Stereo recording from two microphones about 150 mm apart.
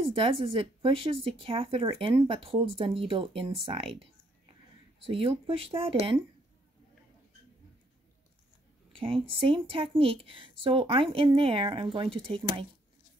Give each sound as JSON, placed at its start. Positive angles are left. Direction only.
{"t": 0.0, "sound": "speech", "side_deg": -35}
{"t": 8.9, "sound": "speech", "side_deg": -35}